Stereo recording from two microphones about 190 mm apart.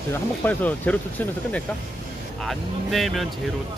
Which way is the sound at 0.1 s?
10° left (ahead or behind).